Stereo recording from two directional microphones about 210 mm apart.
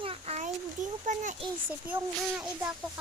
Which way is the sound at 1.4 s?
5° right (ahead or behind).